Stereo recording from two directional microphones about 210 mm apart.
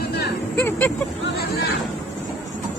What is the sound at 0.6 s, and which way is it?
Speech, 10° left (ahead or behind).